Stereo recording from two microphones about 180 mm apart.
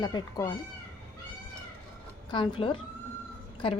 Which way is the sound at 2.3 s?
25° left (ahead or behind).